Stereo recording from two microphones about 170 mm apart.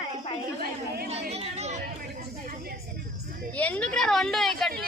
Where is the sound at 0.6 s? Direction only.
65° right (ahead or behind).